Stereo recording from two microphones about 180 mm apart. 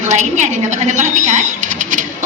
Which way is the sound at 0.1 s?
40° right (ahead or behind).